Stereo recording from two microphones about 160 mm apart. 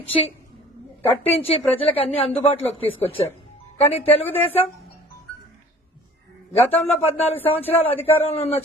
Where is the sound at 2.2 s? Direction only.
40° left (ahead or behind).